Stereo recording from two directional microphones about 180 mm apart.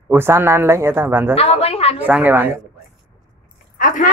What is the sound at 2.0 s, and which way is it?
Speech, 10° right (ahead or behind).